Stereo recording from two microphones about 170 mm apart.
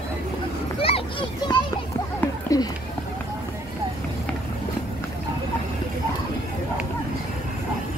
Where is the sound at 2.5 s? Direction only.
20° left (ahead or behind).